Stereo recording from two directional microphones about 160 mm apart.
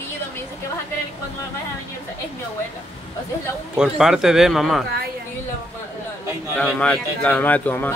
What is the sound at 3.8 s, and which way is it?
Speech, 5° right (ahead or behind).